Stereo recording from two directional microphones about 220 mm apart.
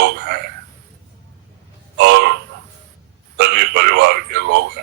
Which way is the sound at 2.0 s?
50° right (ahead or behind).